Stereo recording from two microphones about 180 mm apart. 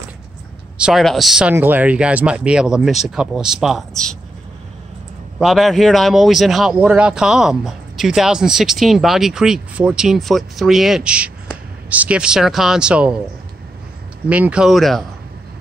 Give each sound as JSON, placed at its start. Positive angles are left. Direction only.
{"t": 0.7, "sound": "speech", "side_deg": -5}
{"t": 5.4, "sound": "speech", "side_deg": 0}
{"t": 14.3, "sound": "speech", "side_deg": -5}